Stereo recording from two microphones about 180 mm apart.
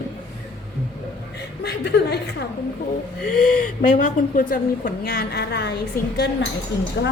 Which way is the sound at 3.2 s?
45° left (ahead or behind).